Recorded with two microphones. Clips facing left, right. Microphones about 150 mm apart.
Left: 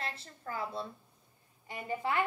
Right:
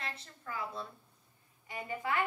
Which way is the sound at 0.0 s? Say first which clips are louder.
Left 3 dB; 35° left (ahead or behind).